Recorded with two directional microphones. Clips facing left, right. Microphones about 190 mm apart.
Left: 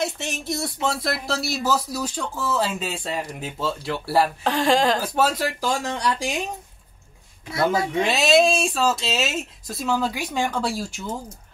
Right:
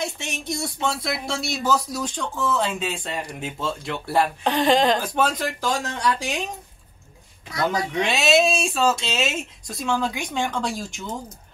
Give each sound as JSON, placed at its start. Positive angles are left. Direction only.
{"t": 0.0, "sound": "speech", "side_deg": 0}
{"t": 7.9, "sound": "speech", "side_deg": 0}